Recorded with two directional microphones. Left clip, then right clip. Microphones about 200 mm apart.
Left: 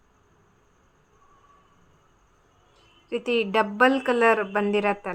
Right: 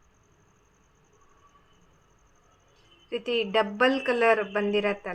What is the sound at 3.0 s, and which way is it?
A woman's voice, 25° left (ahead or behind).